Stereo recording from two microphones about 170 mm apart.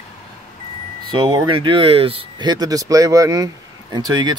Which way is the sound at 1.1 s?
25° right (ahead or behind).